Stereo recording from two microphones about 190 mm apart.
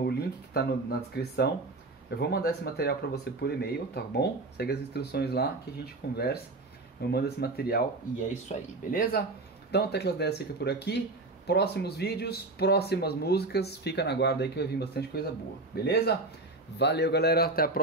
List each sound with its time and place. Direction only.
0.0 s speech: 55° left (ahead or behind)
9.7 s speech: 60° left (ahead or behind)